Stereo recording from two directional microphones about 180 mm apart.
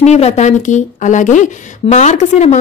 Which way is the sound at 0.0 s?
40° left (ahead or behind).